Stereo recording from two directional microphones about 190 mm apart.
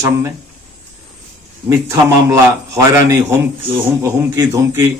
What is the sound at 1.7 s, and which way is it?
A man's voice, 15° right (ahead or behind).